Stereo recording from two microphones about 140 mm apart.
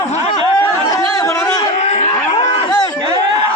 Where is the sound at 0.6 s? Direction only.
20° left (ahead or behind).